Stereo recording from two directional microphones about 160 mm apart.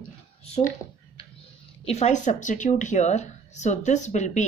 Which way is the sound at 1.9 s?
45° left (ahead or behind).